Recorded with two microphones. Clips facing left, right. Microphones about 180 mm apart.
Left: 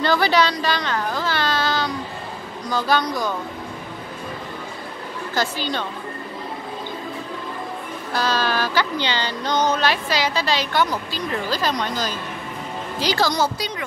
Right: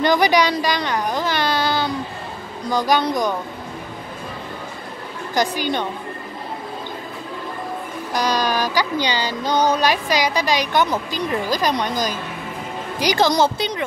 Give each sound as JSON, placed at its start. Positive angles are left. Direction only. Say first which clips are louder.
{"t": 0.0, "sound": "speech", "louder": "right 2 dB", "side_deg": -15}
{"t": 5.3, "sound": "speech", "louder": "right 4 dB", "side_deg": -15}
{"t": 8.1, "sound": "speech", "louder": "right 2 dB", "side_deg": -15}